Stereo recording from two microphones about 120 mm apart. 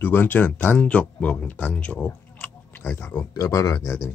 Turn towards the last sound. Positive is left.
turn(degrees=25)  # may be behind; listen again after turning